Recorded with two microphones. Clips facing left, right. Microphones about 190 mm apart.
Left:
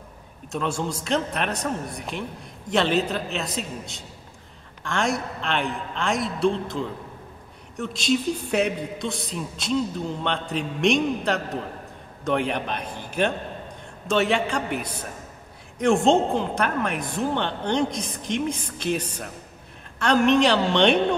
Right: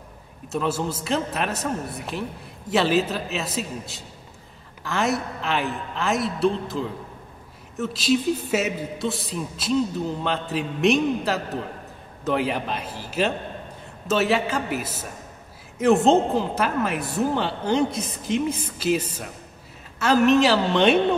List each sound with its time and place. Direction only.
0.5 s speech: 5° right (ahead or behind)